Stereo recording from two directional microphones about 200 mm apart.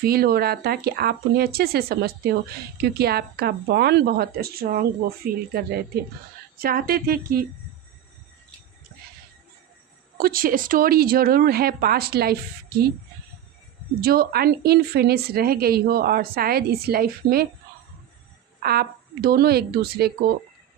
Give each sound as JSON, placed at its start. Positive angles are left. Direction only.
{"t": 0.0, "sound": "a woman's voice", "side_deg": -50}
{"t": 10.2, "sound": "a woman's voice", "side_deg": -45}
{"t": 14.0, "sound": "a woman's voice", "side_deg": -50}
{"t": 18.6, "sound": "a woman's voice", "side_deg": -50}